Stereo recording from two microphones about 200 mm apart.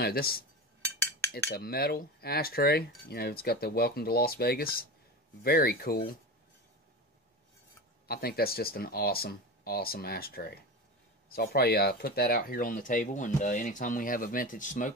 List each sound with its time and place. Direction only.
0.0 s speech: 50° left (ahead or behind)
8.1 s speech: 50° left (ahead or behind)